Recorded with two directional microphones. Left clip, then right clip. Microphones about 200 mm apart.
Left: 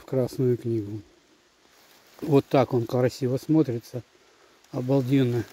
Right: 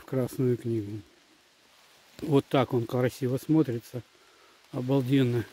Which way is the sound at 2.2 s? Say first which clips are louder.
Left 4 dB; 5° left (ahead or behind).